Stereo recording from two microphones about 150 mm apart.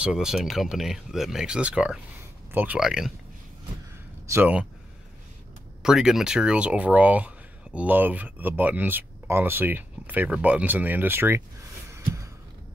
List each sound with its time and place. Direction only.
0.0 s speech: 5° right (ahead or behind)
4.3 s speech: 10° right (ahead or behind)
5.8 s speech: 5° right (ahead or behind)
11.9 s a sound: 20° right (ahead or behind)